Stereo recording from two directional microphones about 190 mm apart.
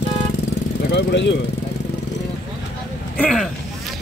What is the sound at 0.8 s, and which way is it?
Speech, 65° left (ahead or behind).